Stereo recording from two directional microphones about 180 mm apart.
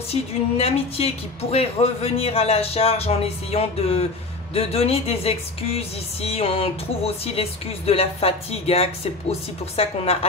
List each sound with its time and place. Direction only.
0.1 s a woman's voice: 35° left (ahead or behind)